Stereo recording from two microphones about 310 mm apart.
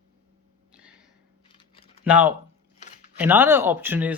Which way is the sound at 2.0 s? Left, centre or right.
Centre.